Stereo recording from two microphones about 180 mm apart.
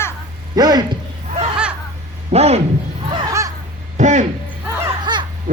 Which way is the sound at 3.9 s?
40° right (ahead or behind).